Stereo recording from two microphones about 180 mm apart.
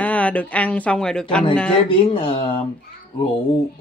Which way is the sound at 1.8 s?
30° left (ahead or behind).